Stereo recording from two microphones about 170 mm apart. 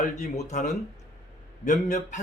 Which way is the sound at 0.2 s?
45° left (ahead or behind).